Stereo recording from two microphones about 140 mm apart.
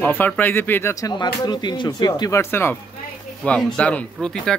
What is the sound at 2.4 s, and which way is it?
Speech, 15° left (ahead or behind).